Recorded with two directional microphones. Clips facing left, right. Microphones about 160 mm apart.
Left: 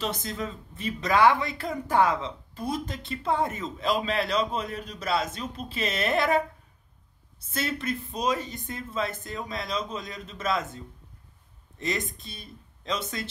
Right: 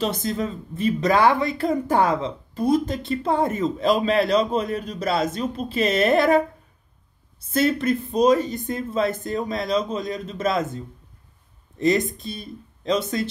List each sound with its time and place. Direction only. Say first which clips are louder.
0.0 s speech: right 7 dB; 35° right (ahead or behind)
7.5 s speech: right 10 dB; 45° right (ahead or behind)
11.8 s speech: right 11 dB; 40° right (ahead or behind)